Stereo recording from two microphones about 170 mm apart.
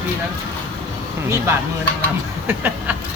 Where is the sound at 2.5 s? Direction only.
10° right (ahead or behind).